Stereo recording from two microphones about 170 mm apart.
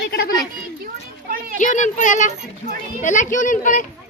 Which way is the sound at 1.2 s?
55° right (ahead or behind).